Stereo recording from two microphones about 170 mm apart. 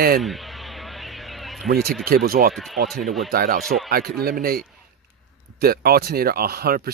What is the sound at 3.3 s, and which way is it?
Speech, 60° right (ahead or behind).